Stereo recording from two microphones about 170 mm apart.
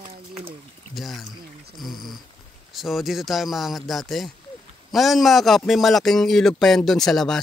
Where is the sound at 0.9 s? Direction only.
Centre (ahead or behind).